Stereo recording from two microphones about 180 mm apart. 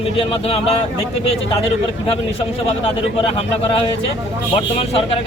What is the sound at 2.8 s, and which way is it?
Speech, 30° left (ahead or behind).